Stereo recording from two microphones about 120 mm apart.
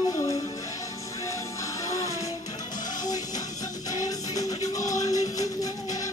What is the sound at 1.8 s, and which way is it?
Music, 25° left (ahead or behind).